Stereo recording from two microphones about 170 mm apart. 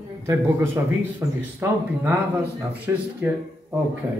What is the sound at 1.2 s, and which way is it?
Speech, 20° right (ahead or behind).